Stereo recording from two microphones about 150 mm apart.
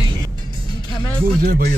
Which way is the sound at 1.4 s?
90° right.